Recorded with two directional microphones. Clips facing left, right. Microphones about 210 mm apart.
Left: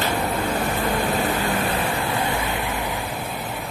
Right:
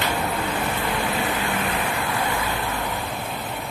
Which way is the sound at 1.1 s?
40° left (ahead or behind).